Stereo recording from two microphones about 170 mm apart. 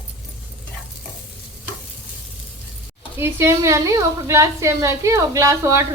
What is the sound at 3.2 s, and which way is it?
A woman's voice, 15° right (ahead or behind).